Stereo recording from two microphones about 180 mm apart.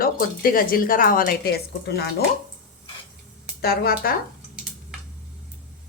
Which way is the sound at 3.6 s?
55° left (ahead or behind).